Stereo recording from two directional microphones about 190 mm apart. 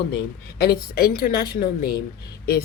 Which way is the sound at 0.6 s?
55° left (ahead or behind).